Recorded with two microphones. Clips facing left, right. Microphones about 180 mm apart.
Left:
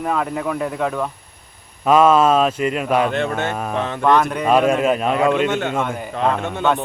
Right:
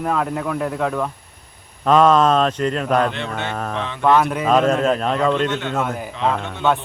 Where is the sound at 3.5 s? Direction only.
10° left (ahead or behind).